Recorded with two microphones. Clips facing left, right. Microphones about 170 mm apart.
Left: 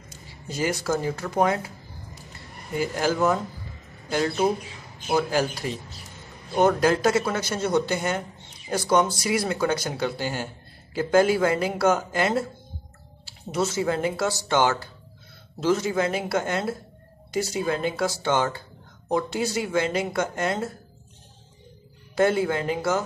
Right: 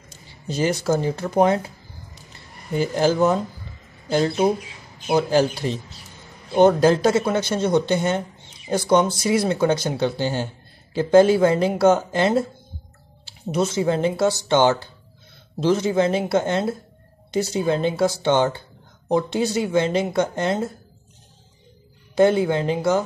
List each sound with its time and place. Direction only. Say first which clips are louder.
0.5 s speech: right 5 dB; 25° right (ahead or behind)
2.7 s speech: right 5 dB; 30° right (ahead or behind)
5.3 s speech: right 6 dB; 25° right (ahead or behind)
13.5 s speech: right 4 dB; 20° right (ahead or behind)
22.1 s speech: right 5 dB; 20° right (ahead or behind)